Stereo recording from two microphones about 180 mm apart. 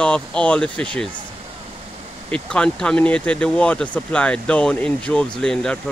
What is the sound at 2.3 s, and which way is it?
Speech, 5° left (ahead or behind).